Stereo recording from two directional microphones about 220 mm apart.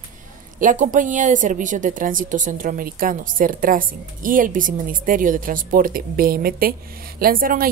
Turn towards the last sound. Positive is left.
turn(degrees=-40)  # may be behind; listen again after turning